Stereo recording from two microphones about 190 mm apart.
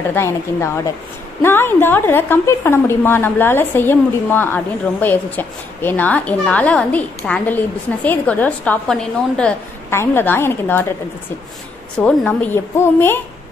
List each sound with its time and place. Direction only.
0.1 s a woman's voice: 15° left (ahead or behind)
12.0 s a woman's voice: 5° left (ahead or behind)